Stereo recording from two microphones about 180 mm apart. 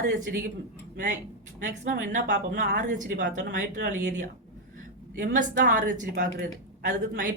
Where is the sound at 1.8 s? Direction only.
45° right (ahead or behind).